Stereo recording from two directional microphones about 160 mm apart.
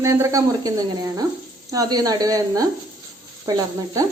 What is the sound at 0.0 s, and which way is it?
Speech, 20° right (ahead or behind).